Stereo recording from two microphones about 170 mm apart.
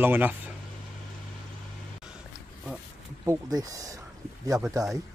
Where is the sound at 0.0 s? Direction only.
10° right (ahead or behind).